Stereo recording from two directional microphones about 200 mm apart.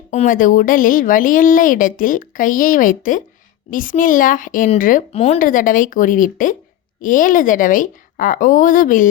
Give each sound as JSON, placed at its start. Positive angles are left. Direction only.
{"t": 0.1, "sound": "a woman's voice", "side_deg": 40}